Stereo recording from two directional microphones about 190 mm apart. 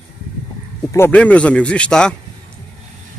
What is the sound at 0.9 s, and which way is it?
Speech, 10° left (ahead or behind).